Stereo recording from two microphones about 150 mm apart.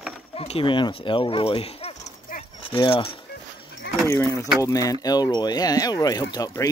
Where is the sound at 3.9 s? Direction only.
90° left.